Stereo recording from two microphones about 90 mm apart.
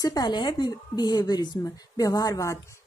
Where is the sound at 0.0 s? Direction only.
45° left (ahead or behind).